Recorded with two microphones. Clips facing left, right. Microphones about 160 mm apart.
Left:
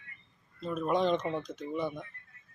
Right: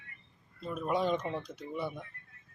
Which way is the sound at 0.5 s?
10° right (ahead or behind).